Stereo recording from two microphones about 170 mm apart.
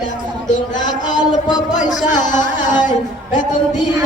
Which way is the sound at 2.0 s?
45° left (ahead or behind).